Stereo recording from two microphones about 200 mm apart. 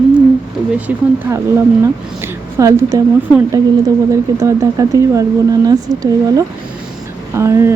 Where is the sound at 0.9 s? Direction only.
10° right (ahead or behind).